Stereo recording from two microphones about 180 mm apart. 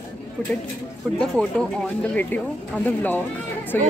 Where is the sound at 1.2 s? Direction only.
5° left (ahead or behind).